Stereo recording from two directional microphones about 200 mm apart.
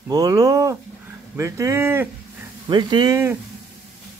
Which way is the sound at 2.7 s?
20° right (ahead or behind).